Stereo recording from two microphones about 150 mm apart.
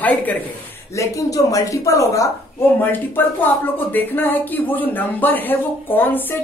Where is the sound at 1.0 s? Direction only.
25° left (ahead or behind).